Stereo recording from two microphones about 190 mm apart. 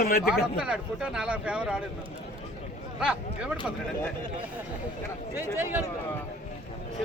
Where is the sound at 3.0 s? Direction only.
5° right (ahead or behind).